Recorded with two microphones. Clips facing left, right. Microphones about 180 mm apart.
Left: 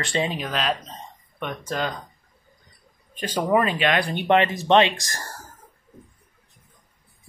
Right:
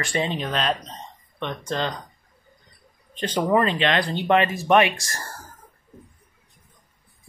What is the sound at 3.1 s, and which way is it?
Speech, 10° left (ahead or behind).